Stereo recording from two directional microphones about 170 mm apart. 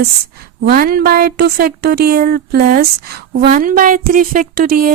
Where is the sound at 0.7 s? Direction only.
60° right (ahead or behind).